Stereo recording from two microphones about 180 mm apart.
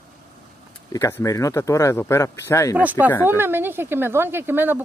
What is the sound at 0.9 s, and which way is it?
Speech, 20° left (ahead or behind).